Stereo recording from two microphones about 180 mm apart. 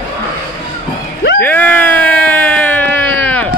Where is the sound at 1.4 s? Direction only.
10° left (ahead or behind).